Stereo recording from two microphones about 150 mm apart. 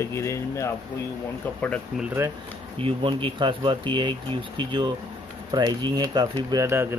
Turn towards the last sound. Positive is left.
turn(degrees=-30)  # may be behind; listen again after turning